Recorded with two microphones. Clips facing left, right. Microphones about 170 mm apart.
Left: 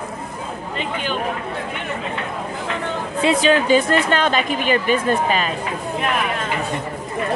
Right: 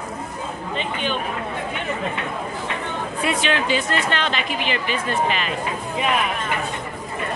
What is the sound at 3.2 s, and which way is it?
Speech, 35° left (ahead or behind).